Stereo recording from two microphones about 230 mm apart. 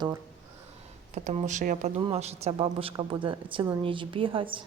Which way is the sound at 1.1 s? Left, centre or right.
Right.